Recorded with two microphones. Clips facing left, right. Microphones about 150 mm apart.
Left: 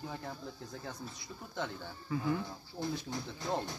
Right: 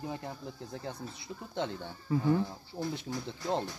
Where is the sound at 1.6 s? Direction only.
30° right (ahead or behind).